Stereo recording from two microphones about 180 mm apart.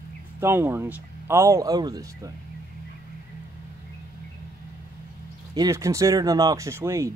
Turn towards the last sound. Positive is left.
turn(degrees=-15)  # may be behind; listen again after turning